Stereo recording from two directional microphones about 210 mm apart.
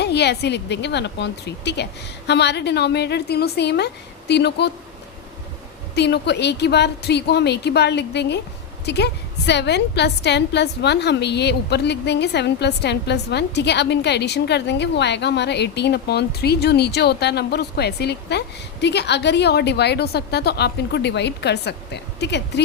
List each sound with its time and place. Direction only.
0.0 s a woman's voice: 55° left (ahead or behind)
5.9 s a woman's voice: 55° left (ahead or behind)